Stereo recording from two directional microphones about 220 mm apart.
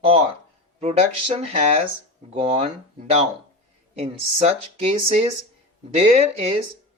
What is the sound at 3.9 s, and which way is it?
Speech, 30° right (ahead or behind).